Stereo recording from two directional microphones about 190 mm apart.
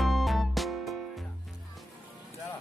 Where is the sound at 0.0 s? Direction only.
Centre (ahead or behind).